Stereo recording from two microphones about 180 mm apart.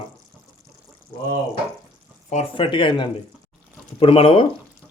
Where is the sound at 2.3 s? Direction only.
30° left (ahead or behind).